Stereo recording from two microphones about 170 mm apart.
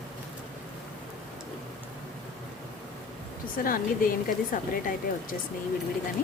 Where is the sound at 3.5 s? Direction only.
55° left (ahead or behind).